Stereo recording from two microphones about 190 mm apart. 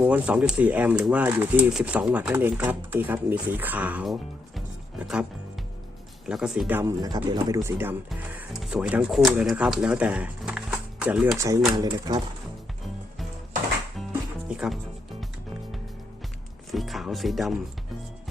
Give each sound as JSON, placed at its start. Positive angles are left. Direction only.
{"t": 0.0, "sound": "speech", "side_deg": -5}
{"t": 6.2, "sound": "speech", "side_deg": -5}
{"t": 11.7, "sound": "speech", "side_deg": -20}
{"t": 14.5, "sound": "music", "side_deg": -5}
{"t": 16.7, "sound": "speech", "side_deg": 0}